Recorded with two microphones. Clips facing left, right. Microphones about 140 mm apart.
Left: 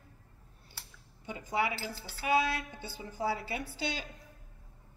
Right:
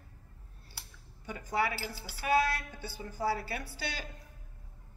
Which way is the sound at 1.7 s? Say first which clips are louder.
Even; 10° right (ahead or behind).